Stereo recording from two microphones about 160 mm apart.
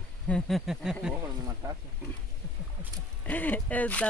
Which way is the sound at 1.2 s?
20° right (ahead or behind).